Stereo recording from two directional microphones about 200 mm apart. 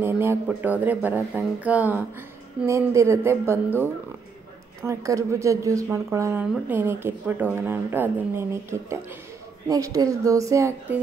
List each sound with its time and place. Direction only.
0.0 s a woman's voice: 10° right (ahead or behind)
4.8 s a woman's voice: 15° right (ahead or behind)